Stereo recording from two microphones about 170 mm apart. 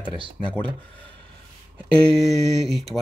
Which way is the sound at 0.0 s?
30° right (ahead or behind).